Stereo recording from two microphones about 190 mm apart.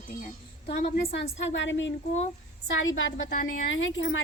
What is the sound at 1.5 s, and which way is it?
Speech, 75° left (ahead or behind).